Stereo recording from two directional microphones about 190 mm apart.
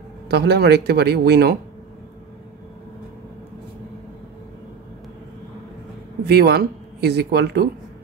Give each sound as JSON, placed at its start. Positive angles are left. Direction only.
{"t": 0.3, "sound": "speech", "side_deg": -60}
{"t": 6.2, "sound": "speech", "side_deg": -60}